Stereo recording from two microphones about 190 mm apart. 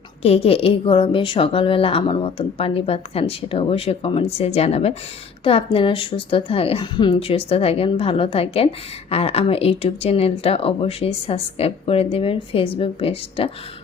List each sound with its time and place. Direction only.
0.2 s a woman's voice: 30° left (ahead or behind)